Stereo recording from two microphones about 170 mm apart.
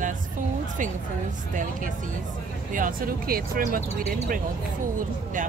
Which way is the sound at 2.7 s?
55° right (ahead or behind).